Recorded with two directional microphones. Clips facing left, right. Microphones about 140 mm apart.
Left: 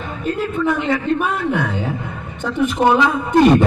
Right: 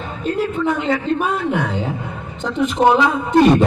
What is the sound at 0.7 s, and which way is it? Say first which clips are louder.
A man's voice: left 3 dB; 25° right (ahead or behind).